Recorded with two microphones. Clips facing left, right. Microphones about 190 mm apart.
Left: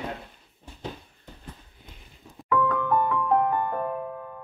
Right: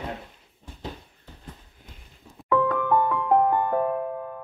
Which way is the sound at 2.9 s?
20° right (ahead or behind).